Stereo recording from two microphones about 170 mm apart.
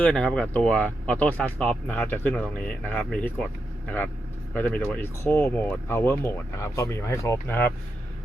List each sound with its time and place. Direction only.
0.0 s speech: 5° left (ahead or behind)